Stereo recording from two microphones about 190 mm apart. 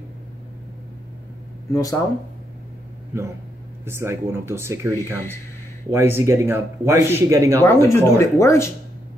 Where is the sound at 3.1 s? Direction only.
10° right (ahead or behind).